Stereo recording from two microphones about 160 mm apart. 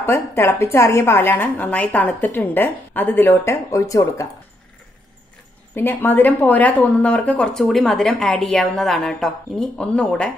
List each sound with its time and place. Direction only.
0.0 s a woman's voice: 15° left (ahead or behind)
5.8 s speech: 10° left (ahead or behind)